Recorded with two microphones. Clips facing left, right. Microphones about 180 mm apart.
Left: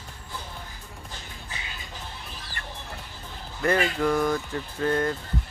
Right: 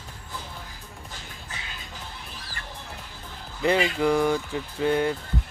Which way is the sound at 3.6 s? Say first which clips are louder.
Right 1 dB; 15° right (ahead or behind).